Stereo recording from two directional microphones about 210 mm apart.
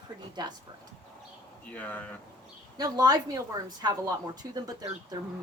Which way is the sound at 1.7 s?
5° left (ahead or behind).